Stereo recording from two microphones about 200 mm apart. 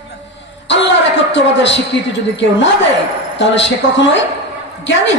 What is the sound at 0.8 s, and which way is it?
Music, 65° left (ahead or behind).